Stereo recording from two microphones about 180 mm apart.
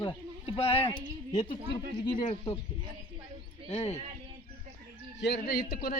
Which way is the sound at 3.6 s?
35° left (ahead or behind).